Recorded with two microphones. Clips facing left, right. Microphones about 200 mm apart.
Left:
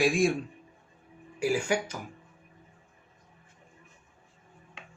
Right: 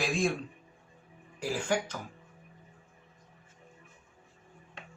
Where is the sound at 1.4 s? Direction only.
10° left (ahead or behind).